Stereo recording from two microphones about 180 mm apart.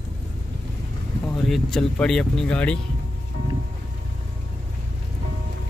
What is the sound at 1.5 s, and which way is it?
Speech, centre (ahead or behind).